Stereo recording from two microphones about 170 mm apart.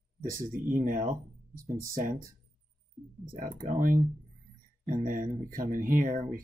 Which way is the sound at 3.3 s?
55° right (ahead or behind).